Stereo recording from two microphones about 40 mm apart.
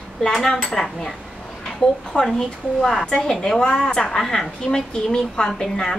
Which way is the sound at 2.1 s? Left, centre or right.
Left.